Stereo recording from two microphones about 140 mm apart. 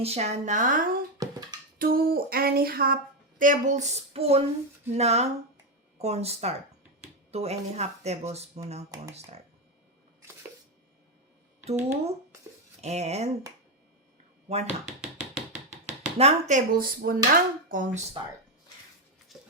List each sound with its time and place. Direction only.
0.0 s a woman's voice: 50° right (ahead or behind); by 0.9 s 65° right (ahead or behind)
1.2 s a sound: 30° right (ahead or behind)
1.8 s a woman's voice: 90° right; by 8.6 s 50° right (ahead or behind)
12.8 s speech: 50° right (ahead or behind)
14.5 s speech: 50° right (ahead or behind)
15.0 s a sound: 5° right (ahead or behind)
15.7 s speech: 50° right (ahead or behind); by 17.2 s 90° right
17.3 s speech: 70° right (ahead or behind)
19.3 s a sound: centre (ahead or behind)